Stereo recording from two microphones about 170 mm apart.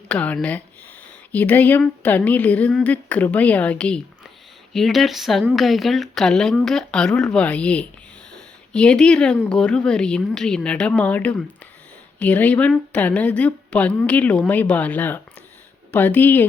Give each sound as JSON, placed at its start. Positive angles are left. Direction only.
{"t": 0.1, "sound": "a woman's voice", "side_deg": 5}
{"t": 8.3, "sound": "a sound", "side_deg": 5}
{"t": 9.5, "sound": "a woman's voice", "side_deg": 5}